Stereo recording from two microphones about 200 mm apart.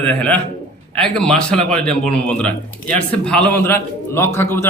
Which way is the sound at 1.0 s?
5° left (ahead or behind).